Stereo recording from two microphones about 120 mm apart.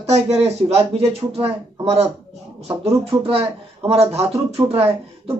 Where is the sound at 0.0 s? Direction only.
65° right (ahead or behind).